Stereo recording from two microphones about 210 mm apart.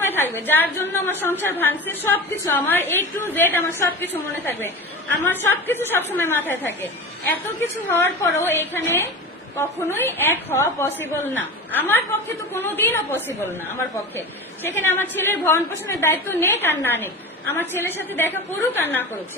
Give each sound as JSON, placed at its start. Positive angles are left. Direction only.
{"t": 0.0, "sound": "a woman's voice", "side_deg": 10}
{"t": 7.9, "sound": "a woman's voice", "side_deg": 10}
{"t": 14.8, "sound": "a woman's voice", "side_deg": 10}